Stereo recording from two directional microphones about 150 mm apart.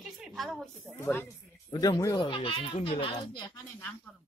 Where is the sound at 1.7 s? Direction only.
25° left (ahead or behind).